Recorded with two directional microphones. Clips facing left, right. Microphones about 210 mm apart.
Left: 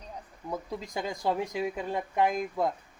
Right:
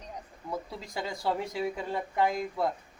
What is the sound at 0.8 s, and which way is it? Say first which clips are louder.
Speech: left 2 dB; 15° left (ahead or behind).